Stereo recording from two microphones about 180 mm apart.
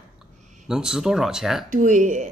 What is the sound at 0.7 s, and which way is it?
Speech, 5° right (ahead or behind).